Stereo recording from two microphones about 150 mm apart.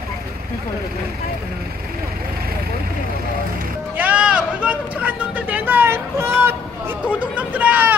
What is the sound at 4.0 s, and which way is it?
Speech, 10° right (ahead or behind).